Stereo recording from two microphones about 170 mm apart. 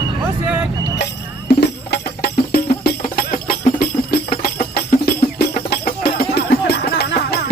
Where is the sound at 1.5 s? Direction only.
70° left (ahead or behind).